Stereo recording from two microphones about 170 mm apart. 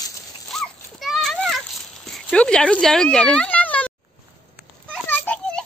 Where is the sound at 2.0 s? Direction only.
5° left (ahead or behind).